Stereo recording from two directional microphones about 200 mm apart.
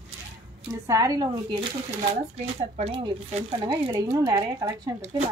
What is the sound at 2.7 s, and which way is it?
A woman's voice, 30° right (ahead or behind).